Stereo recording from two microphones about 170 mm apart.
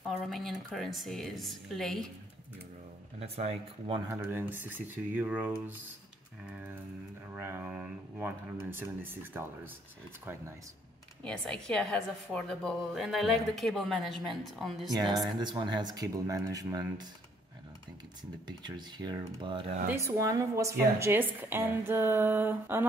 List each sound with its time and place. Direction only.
0.1 s a woman's voice: centre (ahead or behind)
3.2 s speech: 40° right (ahead or behind)
4.1 s a woman's voice: 15° right (ahead or behind)
6.4 s a sound: 10° right (ahead or behind)
7.3 s speech: 15° right (ahead or behind)
11.2 s a woman's voice: 5° left (ahead or behind)
14.9 s speech: 25° right (ahead or behind)
18.7 s a woman's voice: 25° right (ahead or behind)